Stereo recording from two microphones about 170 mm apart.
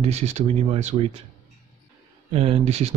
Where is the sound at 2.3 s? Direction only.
35° right (ahead or behind).